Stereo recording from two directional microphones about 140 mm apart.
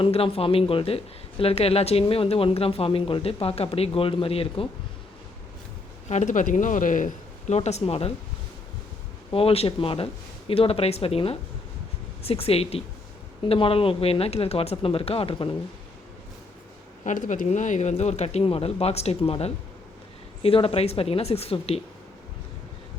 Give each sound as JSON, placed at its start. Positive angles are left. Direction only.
{"t": 0.0, "sound": "speech", "side_deg": 45}
{"t": 6.1, "sound": "speech", "side_deg": 60}
{"t": 9.3, "sound": "speech", "side_deg": 45}
{"t": 17.0, "sound": "speech", "side_deg": 65}